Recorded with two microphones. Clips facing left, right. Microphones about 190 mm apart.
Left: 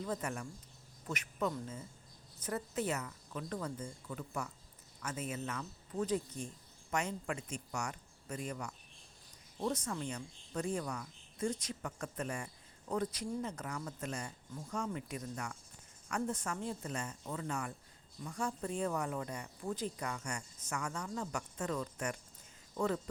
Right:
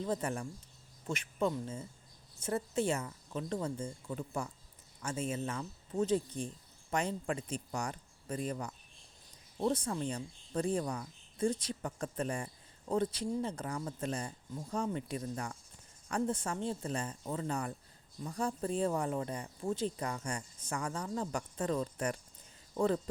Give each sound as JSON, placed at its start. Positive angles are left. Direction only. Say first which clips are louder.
{"t": 0.0, "sound": "a woman's voice", "louder": "right 4 dB", "side_deg": -30}